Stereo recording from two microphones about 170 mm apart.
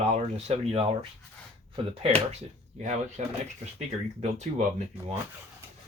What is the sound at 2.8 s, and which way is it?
Speech, 45° right (ahead or behind).